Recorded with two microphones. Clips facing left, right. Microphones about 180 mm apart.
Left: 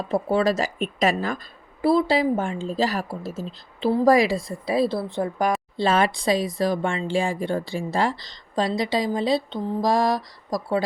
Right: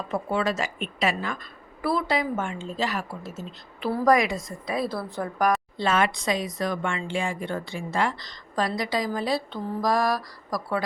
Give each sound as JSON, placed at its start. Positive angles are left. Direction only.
{"t": 0.1, "sound": "speech", "side_deg": 35}
{"t": 1.8, "sound": "speech", "side_deg": 25}